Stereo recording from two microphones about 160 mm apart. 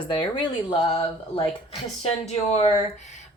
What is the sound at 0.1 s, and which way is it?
Speech, 30° left (ahead or behind).